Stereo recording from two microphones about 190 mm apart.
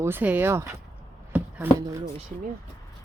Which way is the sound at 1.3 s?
15° right (ahead or behind).